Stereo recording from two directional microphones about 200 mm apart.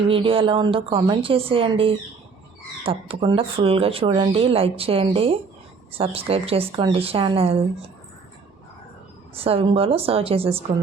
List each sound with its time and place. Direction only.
0.1 s speech: 25° right (ahead or behind)
9.3 s speech: 30° right (ahead or behind)